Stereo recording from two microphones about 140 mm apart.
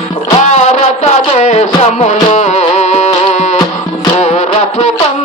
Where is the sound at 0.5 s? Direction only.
55° left (ahead or behind).